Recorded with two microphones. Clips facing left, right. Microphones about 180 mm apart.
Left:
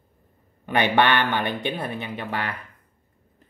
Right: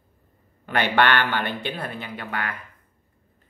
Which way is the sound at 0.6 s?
15° left (ahead or behind).